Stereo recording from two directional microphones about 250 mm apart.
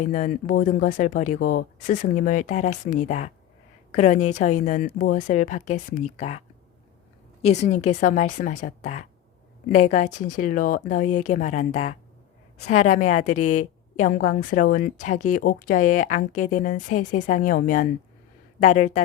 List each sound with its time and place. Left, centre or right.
0.0 s a woman's voice: left
7.4 s a woman's voice: left